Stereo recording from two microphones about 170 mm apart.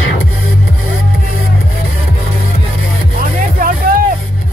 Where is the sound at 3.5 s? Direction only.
55° right (ahead or behind).